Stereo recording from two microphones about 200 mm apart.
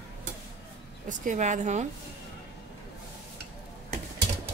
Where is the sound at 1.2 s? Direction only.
40° right (ahead or behind).